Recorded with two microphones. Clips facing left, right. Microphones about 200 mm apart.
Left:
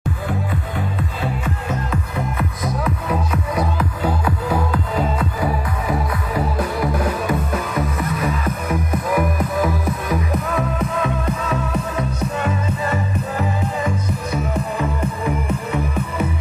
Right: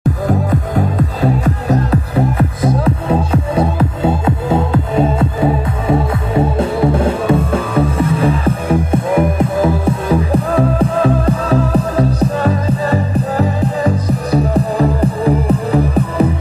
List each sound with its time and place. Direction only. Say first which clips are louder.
0.3 s music: right 9 dB; 40° right (ahead or behind)